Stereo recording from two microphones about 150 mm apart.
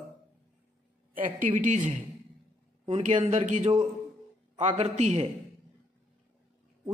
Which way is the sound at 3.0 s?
55° right (ahead or behind).